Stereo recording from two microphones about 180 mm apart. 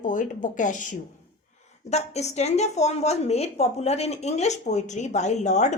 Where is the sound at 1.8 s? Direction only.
40° left (ahead or behind).